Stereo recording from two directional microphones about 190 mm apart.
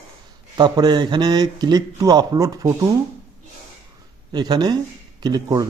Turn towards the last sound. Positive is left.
turn(degrees=-20)  # may be behind; listen again after turning